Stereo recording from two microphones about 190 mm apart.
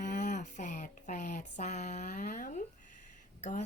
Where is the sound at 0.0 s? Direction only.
40° left (ahead or behind).